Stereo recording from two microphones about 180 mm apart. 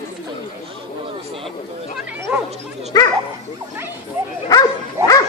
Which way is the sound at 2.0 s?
10° right (ahead or behind).